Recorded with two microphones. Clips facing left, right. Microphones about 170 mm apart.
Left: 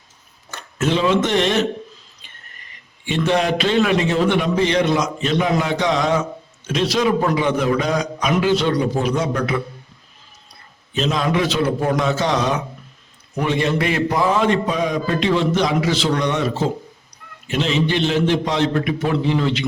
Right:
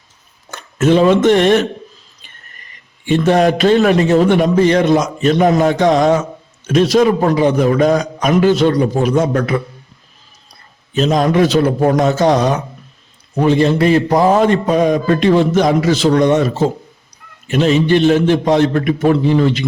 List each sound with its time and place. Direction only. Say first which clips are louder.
0.8 s a man's voice: right 7 dB; 50° right (ahead or behind)
3.1 s a man's voice: right 6 dB; 45° right (ahead or behind)
10.9 s a man's voice: right 7 dB; 45° right (ahead or behind)